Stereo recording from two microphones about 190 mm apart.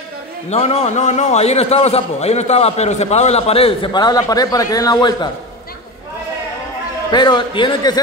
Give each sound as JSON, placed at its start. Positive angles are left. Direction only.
{"t": 0.5, "sound": "a man's voice", "side_deg": 30}
{"t": 7.1, "sound": "a man's voice", "side_deg": 25}